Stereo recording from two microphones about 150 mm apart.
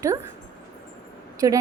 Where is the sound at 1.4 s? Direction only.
20° right (ahead or behind).